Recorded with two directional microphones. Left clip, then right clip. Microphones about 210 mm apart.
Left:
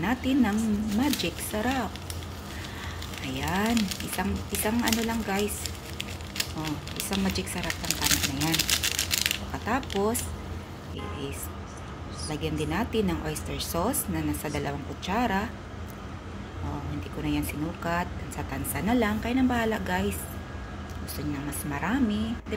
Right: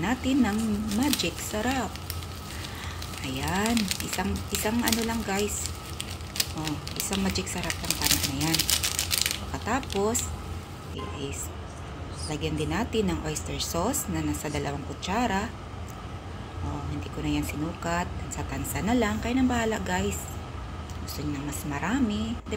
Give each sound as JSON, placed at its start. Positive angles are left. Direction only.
{"t": 0.0, "sound": "speech", "side_deg": 0}
{"t": 3.3, "sound": "speech", "side_deg": 0}
{"t": 5.9, "sound": "a sound", "side_deg": -20}
{"t": 7.2, "sound": "speech", "side_deg": 0}
{"t": 8.5, "sound": "a sound", "side_deg": -10}
{"t": 12.3, "sound": "speech", "side_deg": 0}
{"t": 17.2, "sound": "speech", "side_deg": 0}
{"t": 21.5, "sound": "speech", "side_deg": 0}